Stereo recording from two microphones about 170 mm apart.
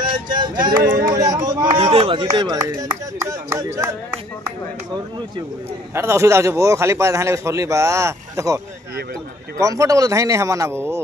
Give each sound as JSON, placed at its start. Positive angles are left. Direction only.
{"t": 0.0, "sound": "a sound", "side_deg": -25}
{"t": 1.0, "sound": "speech", "side_deg": -25}
{"t": 1.8, "sound": "speech", "side_deg": -35}
{"t": 5.9, "sound": "a man's voice", "side_deg": -15}
{"t": 9.6, "sound": "speech", "side_deg": -20}